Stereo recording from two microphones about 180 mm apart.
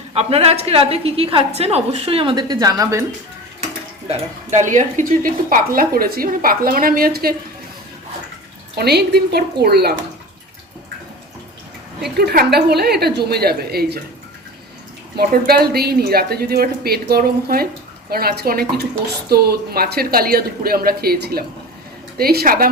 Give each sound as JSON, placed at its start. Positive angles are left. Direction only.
{"t": 0.1, "sound": "a woman's voice", "side_deg": -35}
{"t": 4.5, "sound": "a woman's voice", "side_deg": -40}
{"t": 8.7, "sound": "speech", "side_deg": -65}
{"t": 12.1, "sound": "speech", "side_deg": -55}
{"t": 15.1, "sound": "speech", "side_deg": -60}